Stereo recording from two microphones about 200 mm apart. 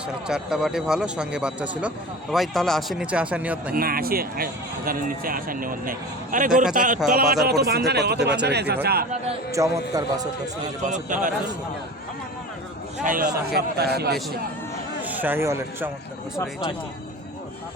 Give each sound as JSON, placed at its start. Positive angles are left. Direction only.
{"t": 0.3, "sound": "speech", "side_deg": -5}
{"t": 3.8, "sound": "a man's voice", "side_deg": -45}
{"t": 9.5, "sound": "a man's voice", "side_deg": -15}
{"t": 10.8, "sound": "a man's voice", "side_deg": -40}
{"t": 13.1, "sound": "a man's voice", "side_deg": -40}
{"t": 13.5, "sound": "speech", "side_deg": -55}
{"t": 15.0, "sound": "speech", "side_deg": -10}